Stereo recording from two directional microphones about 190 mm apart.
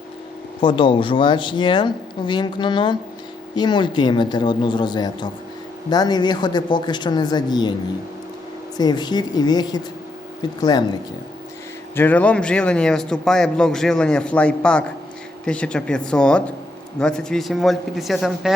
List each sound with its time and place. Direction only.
0.6 s speech: 25° left (ahead or behind)
8.8 s speech: 20° left (ahead or behind)
11.9 s speech: 10° left (ahead or behind)